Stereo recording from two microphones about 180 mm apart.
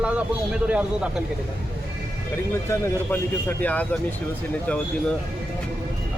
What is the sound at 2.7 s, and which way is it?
Speech, 15° left (ahead or behind).